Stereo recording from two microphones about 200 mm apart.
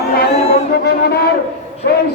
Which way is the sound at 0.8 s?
55° left (ahead or behind).